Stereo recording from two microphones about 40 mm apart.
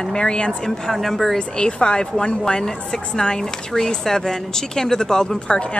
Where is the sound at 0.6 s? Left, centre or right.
Centre.